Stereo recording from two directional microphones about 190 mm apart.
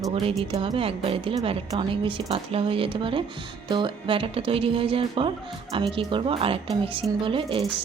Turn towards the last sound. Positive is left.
turn(degrees=-30)  # may be behind; listen again after turning